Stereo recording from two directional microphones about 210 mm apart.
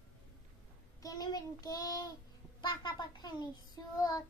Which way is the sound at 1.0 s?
20° left (ahead or behind).